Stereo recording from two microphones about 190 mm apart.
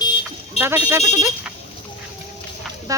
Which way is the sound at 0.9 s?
15° right (ahead or behind).